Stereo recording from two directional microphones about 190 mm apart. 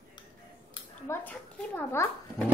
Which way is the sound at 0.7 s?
15° left (ahead or behind).